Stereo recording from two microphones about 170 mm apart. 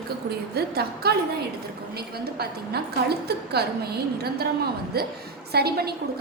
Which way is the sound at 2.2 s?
70° right (ahead or behind).